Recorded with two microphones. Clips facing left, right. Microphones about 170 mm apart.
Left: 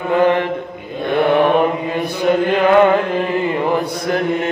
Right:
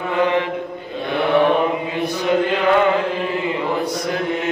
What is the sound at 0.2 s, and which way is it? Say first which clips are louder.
Chant: left 3 dB; 50° left (ahead or behind).